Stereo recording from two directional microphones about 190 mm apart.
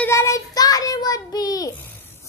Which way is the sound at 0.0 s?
15° left (ahead or behind).